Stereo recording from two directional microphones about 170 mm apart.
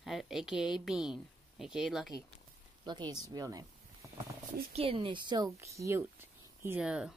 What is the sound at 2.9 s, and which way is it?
Speech, 25° right (ahead or behind).